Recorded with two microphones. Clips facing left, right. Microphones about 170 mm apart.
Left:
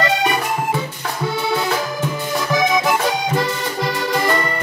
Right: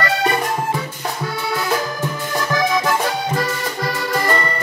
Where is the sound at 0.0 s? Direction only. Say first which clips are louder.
Left 1 dB; 20° left (ahead or behind).